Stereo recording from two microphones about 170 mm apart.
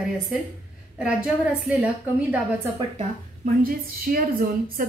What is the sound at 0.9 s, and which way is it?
Speech, 5° right (ahead or behind).